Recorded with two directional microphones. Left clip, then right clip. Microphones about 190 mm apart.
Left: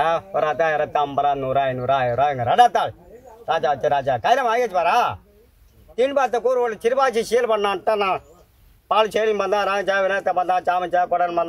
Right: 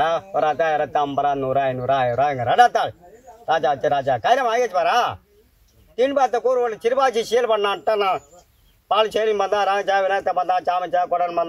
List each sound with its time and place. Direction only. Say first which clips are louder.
0.0 s a man's voice: even; 20° left (ahead or behind)